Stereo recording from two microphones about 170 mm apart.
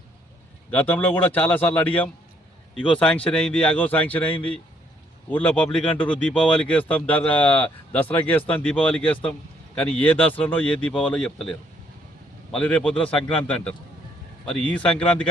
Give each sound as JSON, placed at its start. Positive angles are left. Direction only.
{"t": 0.7, "sound": "speech", "side_deg": 10}